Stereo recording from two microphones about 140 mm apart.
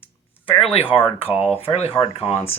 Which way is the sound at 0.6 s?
40° left (ahead or behind).